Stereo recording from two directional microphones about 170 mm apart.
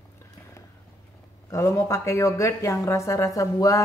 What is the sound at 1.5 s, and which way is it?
A woman's voice, 20° left (ahead or behind).